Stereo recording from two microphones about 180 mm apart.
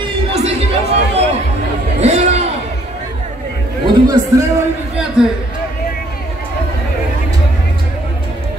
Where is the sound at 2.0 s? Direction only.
35° right (ahead or behind).